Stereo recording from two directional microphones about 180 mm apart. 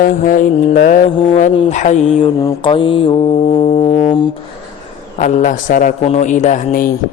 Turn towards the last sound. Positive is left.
turn(degrees=50)  # may be behind; listen again after turning